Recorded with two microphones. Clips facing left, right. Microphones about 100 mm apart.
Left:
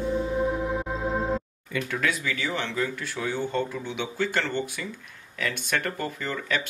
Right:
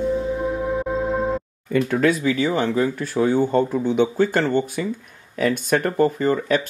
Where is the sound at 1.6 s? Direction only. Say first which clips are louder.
Right 12 dB; 45° right (ahead or behind).